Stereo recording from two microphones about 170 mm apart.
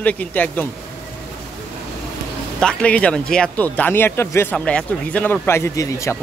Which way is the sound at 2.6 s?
5° left (ahead or behind).